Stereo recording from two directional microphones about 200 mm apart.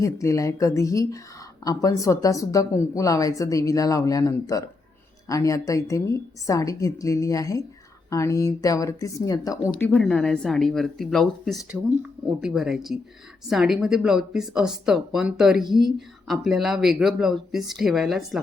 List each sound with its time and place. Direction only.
0.0 s speech: 15° left (ahead or behind)
9.7 s speech: 5° left (ahead or behind)